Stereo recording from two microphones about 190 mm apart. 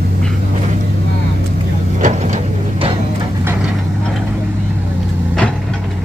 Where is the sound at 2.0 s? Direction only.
35° right (ahead or behind).